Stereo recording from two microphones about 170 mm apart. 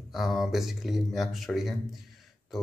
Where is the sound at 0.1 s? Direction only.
Centre (ahead or behind).